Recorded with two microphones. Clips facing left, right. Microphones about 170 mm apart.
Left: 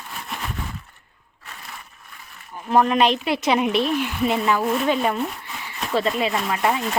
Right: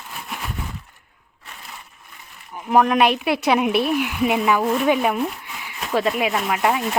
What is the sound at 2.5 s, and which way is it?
Speech, 15° right (ahead or behind).